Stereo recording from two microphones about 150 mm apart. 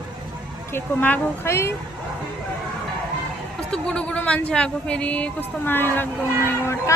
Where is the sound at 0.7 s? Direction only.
15° left (ahead or behind).